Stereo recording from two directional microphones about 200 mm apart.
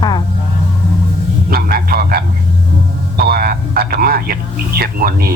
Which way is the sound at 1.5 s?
50° right (ahead or behind).